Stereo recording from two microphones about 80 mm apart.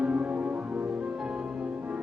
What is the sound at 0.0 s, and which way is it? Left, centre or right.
Music, centre.